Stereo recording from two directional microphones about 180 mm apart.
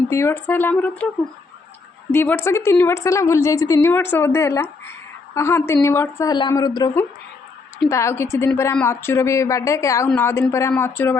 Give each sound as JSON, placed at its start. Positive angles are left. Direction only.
{"t": 0.1, "sound": "a woman's voice", "side_deg": 15}
{"t": 2.1, "sound": "a woman's voice", "side_deg": 10}